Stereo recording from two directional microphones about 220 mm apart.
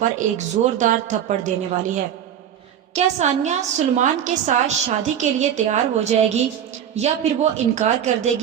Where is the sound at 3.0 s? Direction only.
30° right (ahead or behind).